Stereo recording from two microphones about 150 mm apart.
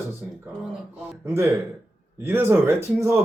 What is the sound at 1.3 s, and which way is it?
Speech, 20° right (ahead or behind).